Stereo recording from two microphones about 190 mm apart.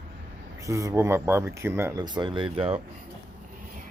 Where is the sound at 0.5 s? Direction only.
15° right (ahead or behind).